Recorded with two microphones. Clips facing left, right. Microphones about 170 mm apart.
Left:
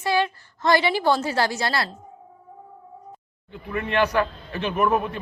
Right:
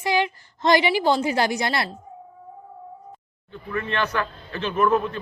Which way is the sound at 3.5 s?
15° left (ahead or behind).